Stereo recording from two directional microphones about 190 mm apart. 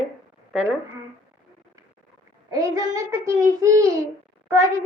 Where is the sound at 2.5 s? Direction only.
20° right (ahead or behind).